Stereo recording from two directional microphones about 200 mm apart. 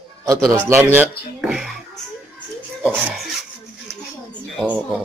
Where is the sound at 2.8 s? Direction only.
5° right (ahead or behind).